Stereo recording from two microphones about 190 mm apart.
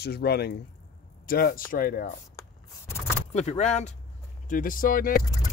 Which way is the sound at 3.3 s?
35° left (ahead or behind).